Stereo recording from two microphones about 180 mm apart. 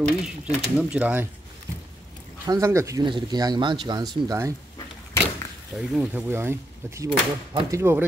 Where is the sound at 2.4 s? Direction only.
20° right (ahead or behind).